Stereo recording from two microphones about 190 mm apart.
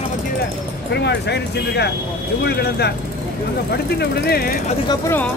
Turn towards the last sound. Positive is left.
turn(degrees=15)  # may be behind; listen again after turning